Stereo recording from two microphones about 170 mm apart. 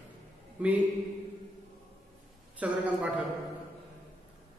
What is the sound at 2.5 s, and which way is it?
Speech, 10° right (ahead or behind).